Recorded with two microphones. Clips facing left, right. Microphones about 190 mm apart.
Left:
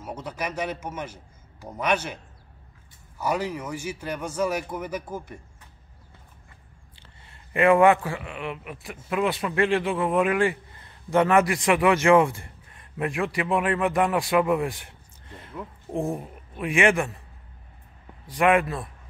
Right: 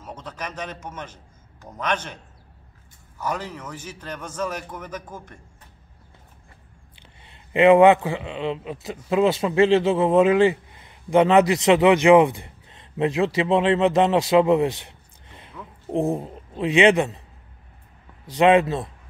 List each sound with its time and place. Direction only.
0.0 s a man's voice: 10° left (ahead or behind)
3.2 s a man's voice: 10° left (ahead or behind)
7.0 s a man's voice: 20° right (ahead or behind)
18.3 s speech: 20° right (ahead or behind)